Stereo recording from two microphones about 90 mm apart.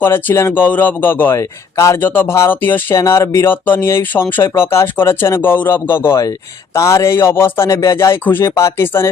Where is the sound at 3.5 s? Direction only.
25° left (ahead or behind).